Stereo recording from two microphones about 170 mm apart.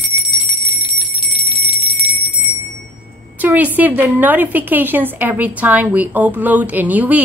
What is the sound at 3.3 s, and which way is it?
Speech, 10° right (ahead or behind).